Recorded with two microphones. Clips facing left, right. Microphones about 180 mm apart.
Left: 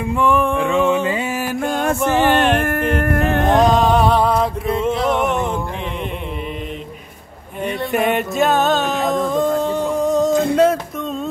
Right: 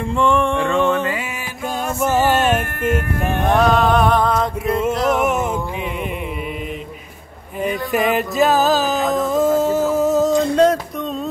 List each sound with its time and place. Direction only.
0.0 s a sound: 5° left (ahead or behind)
1.4 s music: 55° left (ahead or behind)
2.0 s music: 5° right (ahead or behind)
2.6 s music: 50° left (ahead or behind)
3.5 s music: 15° left (ahead or behind)
4.6 s music: centre (ahead or behind)
7.6 s a sound: centre (ahead or behind)